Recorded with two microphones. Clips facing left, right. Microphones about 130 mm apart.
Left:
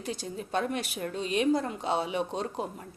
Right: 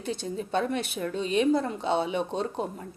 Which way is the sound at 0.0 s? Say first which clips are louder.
Right 4 dB; 25° right (ahead or behind).